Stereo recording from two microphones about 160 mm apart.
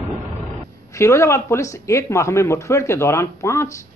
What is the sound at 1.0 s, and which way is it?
Speech, 20° left (ahead or behind).